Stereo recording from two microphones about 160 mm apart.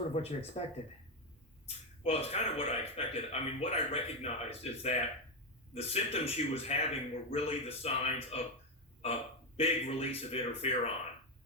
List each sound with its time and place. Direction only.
0.1 s speech: 40° left (ahead or behind)
1.6 s speech: 40° left (ahead or behind)
9.6 s speech: 40° left (ahead or behind)